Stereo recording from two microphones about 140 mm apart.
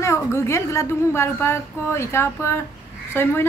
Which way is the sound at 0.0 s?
20° left (ahead or behind).